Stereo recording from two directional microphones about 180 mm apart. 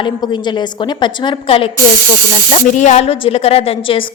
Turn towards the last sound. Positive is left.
turn(degrees=30)  # may be behind; listen again after turning